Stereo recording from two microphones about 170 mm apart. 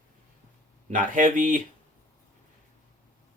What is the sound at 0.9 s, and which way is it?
Speech, 50° right (ahead or behind).